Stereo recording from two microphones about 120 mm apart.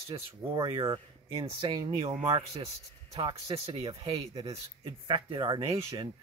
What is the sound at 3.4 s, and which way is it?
Speech, 55° right (ahead or behind).